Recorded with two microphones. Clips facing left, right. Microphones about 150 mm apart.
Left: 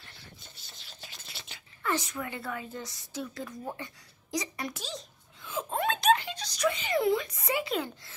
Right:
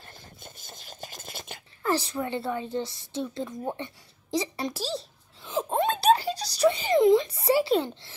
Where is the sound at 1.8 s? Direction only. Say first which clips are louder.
Right 5 dB; 30° right (ahead or behind).